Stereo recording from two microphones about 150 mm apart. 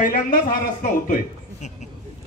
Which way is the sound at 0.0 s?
65° left (ahead or behind).